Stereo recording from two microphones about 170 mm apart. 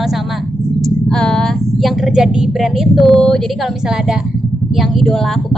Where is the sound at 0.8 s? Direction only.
5° left (ahead or behind).